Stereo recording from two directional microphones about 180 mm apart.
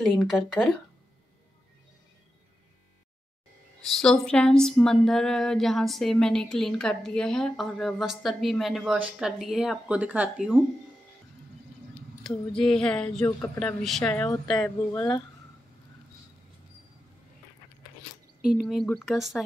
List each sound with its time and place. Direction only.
0.0 s speech: centre (ahead or behind)
3.9 s speech: 5° left (ahead or behind)
12.2 s speech: centre (ahead or behind)
14.9 s speech: 20° left (ahead or behind)
18.4 s speech: 5° right (ahead or behind)